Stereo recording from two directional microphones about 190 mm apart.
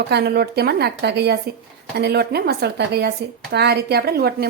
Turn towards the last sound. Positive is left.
turn(degrees=-55)  # may be behind; listen again after turning